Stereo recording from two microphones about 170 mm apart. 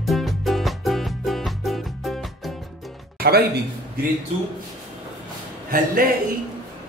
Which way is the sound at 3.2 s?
70° right (ahead or behind).